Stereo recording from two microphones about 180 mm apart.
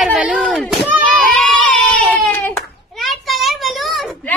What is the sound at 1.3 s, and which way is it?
Baby cry, 5° left (ahead or behind).